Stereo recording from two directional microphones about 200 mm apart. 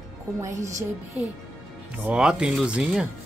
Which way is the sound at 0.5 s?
35° right (ahead or behind).